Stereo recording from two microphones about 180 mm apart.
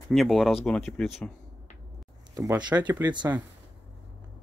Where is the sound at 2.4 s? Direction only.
20° right (ahead or behind).